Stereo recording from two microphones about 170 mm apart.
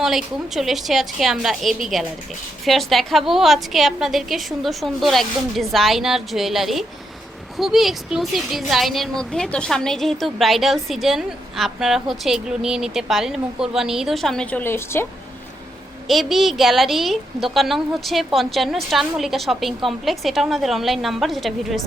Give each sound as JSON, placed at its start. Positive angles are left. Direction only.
{"t": 0.0, "sound": "speech", "side_deg": 0}
{"t": 16.0, "sound": "speech", "side_deg": 0}